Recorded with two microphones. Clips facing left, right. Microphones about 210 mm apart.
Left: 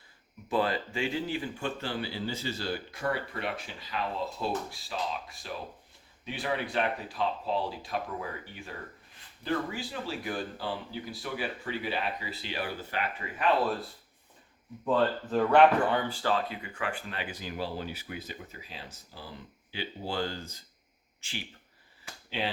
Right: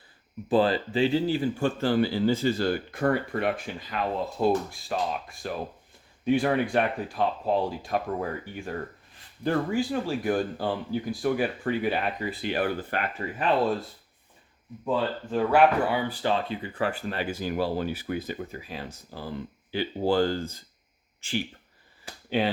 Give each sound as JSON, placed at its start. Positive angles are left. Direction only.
{"t": 0.4, "sound": "a man's voice", "side_deg": -30}
{"t": 14.8, "sound": "a man's voice", "side_deg": -5}
{"t": 22.3, "sound": "a man's voice", "side_deg": -50}